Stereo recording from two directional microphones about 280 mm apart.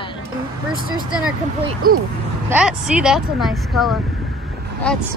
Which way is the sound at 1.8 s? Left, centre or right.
Right.